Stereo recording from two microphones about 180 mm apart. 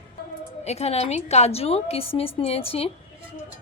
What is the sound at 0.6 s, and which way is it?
A woman's voice, 35° left (ahead or behind).